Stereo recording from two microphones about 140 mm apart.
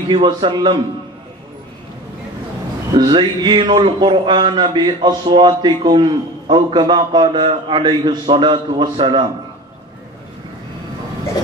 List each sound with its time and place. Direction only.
0.1 s a man's voice: 35° right (ahead or behind)
2.9 s a man's voice: 30° right (ahead or behind)